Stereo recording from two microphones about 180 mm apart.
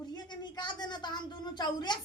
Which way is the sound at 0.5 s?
25° left (ahead or behind).